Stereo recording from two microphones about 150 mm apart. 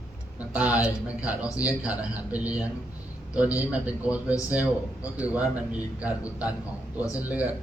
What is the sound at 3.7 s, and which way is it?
A man's voice, 10° right (ahead or behind).